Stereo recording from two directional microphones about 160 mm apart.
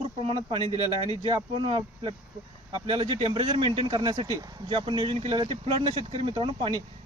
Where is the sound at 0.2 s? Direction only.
35° right (ahead or behind).